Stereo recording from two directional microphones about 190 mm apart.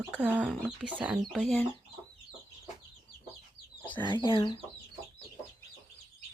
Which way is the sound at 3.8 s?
25° left (ahead or behind).